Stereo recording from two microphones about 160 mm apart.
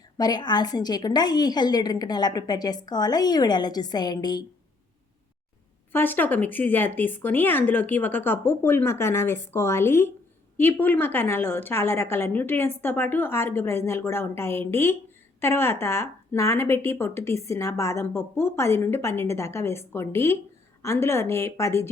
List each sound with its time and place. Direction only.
0.2 s a woman's voice: 25° left (ahead or behind)
5.9 s speech: 15° left (ahead or behind)